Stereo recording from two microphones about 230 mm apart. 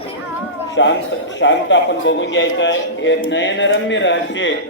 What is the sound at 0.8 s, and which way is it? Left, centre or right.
A man's voice, left.